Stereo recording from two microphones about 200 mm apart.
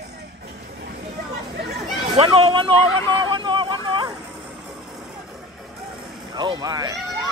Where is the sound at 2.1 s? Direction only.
30° right (ahead or behind).